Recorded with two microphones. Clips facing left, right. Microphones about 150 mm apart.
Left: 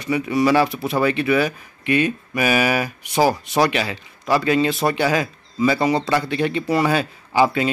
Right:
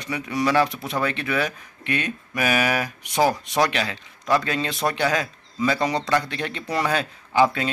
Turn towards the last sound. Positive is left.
turn(degrees=5)  # may be behind; listen again after turning